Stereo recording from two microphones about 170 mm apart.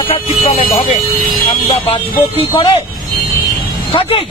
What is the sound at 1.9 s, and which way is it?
Speech, 30° left (ahead or behind).